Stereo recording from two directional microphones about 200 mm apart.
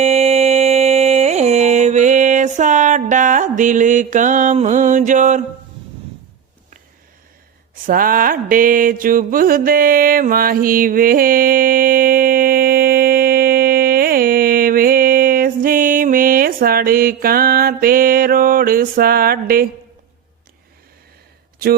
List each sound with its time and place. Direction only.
0.0 s music: 35° right (ahead or behind)
7.9 s mantra: 45° right (ahead or behind)